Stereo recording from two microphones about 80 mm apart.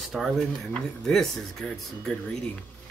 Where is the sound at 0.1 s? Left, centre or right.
Centre.